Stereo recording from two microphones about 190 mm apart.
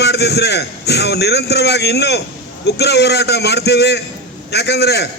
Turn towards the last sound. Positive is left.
turn(degrees=60)  # may be behind; listen again after turning